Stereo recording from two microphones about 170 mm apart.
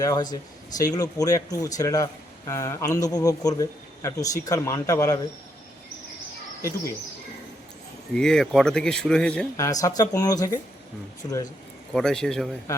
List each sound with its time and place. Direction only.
0.0 s speech: 20° left (ahead or behind)
6.6 s speech: 15° left (ahead or behind)
8.1 s speech: 5° left (ahead or behind)
9.6 s speech: 20° left (ahead or behind)
11.9 s speech: 5° left (ahead or behind)